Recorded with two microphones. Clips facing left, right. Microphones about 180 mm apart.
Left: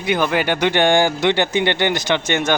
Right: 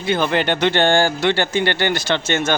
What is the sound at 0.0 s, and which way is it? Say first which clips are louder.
Speech: even; 10° left (ahead or behind).